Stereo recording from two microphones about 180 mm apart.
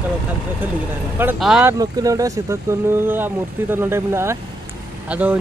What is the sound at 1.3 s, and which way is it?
Speech, 5° right (ahead or behind).